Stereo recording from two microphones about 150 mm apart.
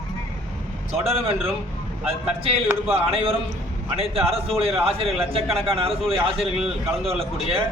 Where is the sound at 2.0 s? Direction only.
40° right (ahead or behind).